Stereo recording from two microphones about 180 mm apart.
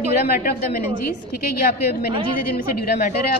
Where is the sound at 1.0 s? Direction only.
55° left (ahead or behind).